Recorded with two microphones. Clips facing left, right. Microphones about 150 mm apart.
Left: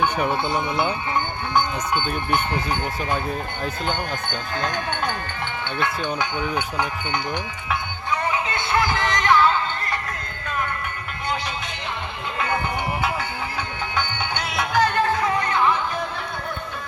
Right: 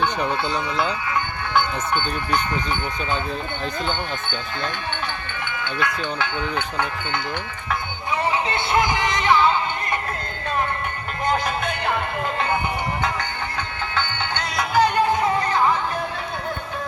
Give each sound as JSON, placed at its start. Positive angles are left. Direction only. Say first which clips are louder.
{"t": 0.0, "sound": "speech", "louder": "left 1 dB", "side_deg": 10}
{"t": 5.5, "sound": "music", "louder": "right 1 dB", "side_deg": 30}
{"t": 6.0, "sound": "speech", "louder": "left 1 dB", "side_deg": 15}
{"t": 8.3, "sound": "music", "louder": "right 3 dB", "side_deg": -30}
{"t": 8.8, "sound": "music", "louder": "right 1 dB", "side_deg": -15}
{"t": 11.3, "sound": "music", "louder": "right 6 dB", "side_deg": -55}
{"t": 14.5, "sound": "music", "louder": "right 1 dB", "side_deg": 0}
{"t": 14.8, "sound": "music", "louder": "right 2 dB", "side_deg": -10}
{"t": 15.2, "sound": "a sound", "louder": "right 2 dB", "side_deg": -35}